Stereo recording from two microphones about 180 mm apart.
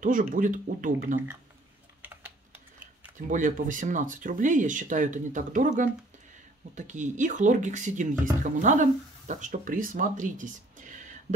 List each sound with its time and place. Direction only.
0.0 s speech: 45° right (ahead or behind)
2.0 s typing: 10° right (ahead or behind)
3.3 s speech: 45° right (ahead or behind)